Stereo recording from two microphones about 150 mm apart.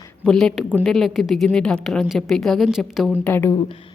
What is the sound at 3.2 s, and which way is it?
Speech, 15° left (ahead or behind).